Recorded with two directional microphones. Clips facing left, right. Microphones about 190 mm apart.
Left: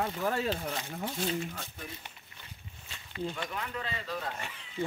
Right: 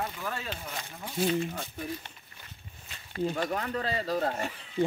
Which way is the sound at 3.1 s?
40° right (ahead or behind).